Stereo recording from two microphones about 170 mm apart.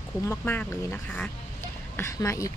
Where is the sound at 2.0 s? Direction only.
20° left (ahead or behind).